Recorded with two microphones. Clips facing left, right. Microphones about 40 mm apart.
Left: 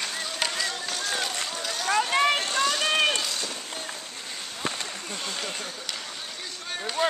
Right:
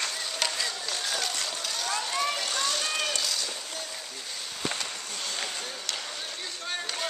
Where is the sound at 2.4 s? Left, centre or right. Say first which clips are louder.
Left 4 dB; left.